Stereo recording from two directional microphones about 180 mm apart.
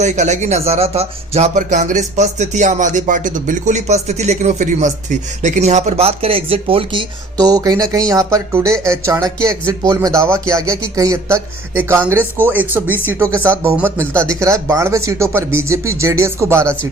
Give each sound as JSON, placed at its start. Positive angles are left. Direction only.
{"t": 0.0, "sound": "speech", "side_deg": -40}